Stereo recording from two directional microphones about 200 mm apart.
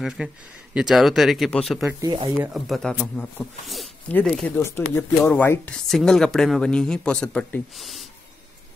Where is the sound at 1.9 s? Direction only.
20° right (ahead or behind).